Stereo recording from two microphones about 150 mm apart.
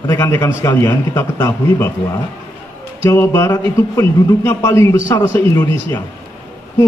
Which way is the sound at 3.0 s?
15° left (ahead or behind).